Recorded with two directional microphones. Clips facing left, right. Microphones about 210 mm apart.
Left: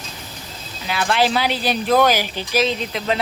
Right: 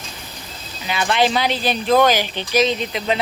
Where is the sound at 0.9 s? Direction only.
Centre (ahead or behind).